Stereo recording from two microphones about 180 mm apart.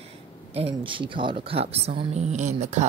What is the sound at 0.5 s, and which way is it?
Speech, 35° right (ahead or behind).